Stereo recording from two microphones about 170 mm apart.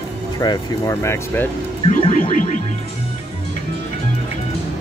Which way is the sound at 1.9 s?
40° left (ahead or behind).